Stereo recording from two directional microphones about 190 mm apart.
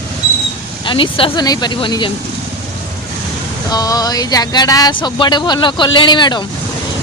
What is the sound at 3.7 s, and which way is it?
Speech, 20° left (ahead or behind).